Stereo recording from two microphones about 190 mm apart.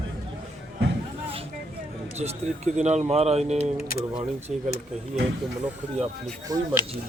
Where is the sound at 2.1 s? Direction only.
35° right (ahead or behind).